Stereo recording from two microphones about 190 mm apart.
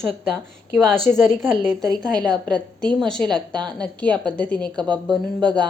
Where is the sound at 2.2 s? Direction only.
20° right (ahead or behind).